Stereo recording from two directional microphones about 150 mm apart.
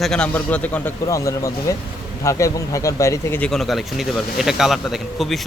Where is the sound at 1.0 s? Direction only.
20° left (ahead or behind).